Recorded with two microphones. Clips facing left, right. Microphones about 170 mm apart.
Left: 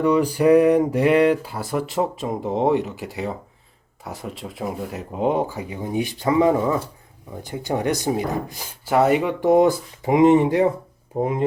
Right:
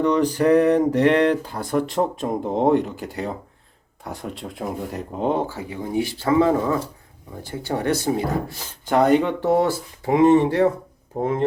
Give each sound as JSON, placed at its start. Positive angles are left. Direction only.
{"t": 0.0, "sound": "speech", "side_deg": 10}